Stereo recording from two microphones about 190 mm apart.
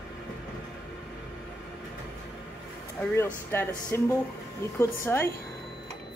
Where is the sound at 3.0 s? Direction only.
15° left (ahead or behind).